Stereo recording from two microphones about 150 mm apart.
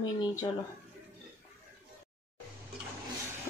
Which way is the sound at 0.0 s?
30° left (ahead or behind).